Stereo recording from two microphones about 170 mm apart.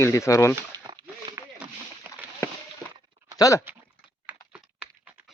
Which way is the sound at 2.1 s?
15° right (ahead or behind).